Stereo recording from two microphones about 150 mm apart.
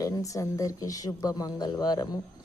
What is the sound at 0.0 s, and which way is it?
A woman's voice, 20° left (ahead or behind).